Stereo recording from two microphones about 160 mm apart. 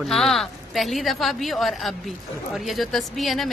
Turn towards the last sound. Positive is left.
turn(degrees=0)  # may be behind; listen again after turning